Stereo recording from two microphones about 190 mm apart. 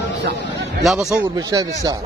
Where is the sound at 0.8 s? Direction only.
Centre (ahead or behind).